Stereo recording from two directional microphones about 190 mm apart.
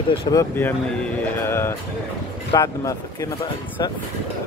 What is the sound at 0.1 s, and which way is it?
Speech, 20° left (ahead or behind).